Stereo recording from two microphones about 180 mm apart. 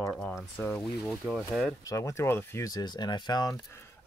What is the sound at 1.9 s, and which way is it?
Speech, 20° left (ahead or behind).